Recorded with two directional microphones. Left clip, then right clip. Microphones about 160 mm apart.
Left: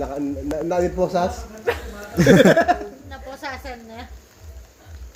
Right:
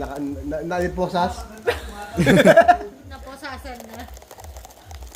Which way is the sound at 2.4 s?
20° right (ahead or behind).